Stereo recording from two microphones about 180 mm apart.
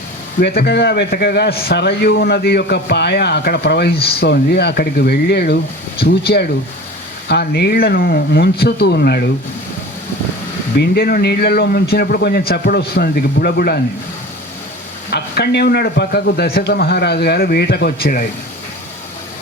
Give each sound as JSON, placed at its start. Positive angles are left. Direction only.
{"t": 0.3, "sound": "a man's voice", "side_deg": 65}
{"t": 10.8, "sound": "a man's voice", "side_deg": 60}
{"t": 15.1, "sound": "a man's voice", "side_deg": 65}